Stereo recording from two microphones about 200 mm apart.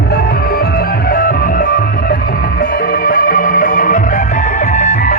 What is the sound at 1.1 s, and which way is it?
Music, 45° left (ahead or behind).